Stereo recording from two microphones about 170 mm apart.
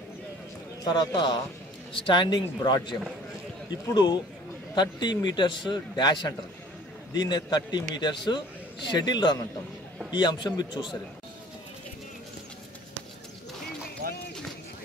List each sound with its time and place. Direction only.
0.9 s a man's voice: 25° left (ahead or behind)
14.0 s run: 65° right (ahead or behind)